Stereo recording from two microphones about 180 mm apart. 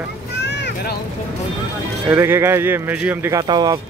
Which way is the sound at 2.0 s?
15° right (ahead or behind).